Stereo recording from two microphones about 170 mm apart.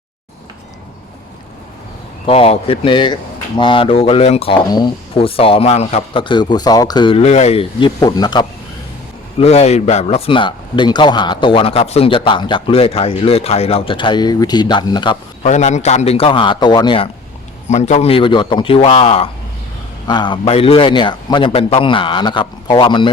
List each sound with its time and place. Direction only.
2.2 s a man's voice: 35° left (ahead or behind)
9.4 s speech: 40° left (ahead or behind)
15.4 s speech: 45° left (ahead or behind); by 17.1 s 30° left (ahead or behind)
17.7 s a man's voice: 40° left (ahead or behind)